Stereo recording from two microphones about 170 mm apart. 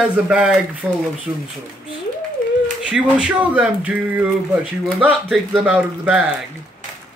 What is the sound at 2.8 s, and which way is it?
Speech, 5° right (ahead or behind).